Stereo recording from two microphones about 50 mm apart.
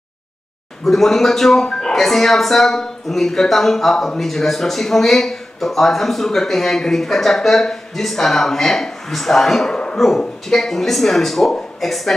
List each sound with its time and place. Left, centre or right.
0.8 s speech: centre
1.7 s speech: centre
2.0 s speech: centre